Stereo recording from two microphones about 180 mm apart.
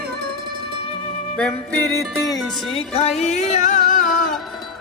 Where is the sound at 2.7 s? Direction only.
35° left (ahead or behind).